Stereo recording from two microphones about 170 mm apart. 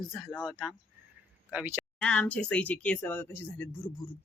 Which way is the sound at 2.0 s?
5° left (ahead or behind).